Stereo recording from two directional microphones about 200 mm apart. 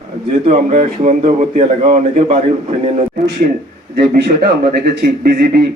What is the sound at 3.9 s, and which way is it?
Speech, 50° right (ahead or behind).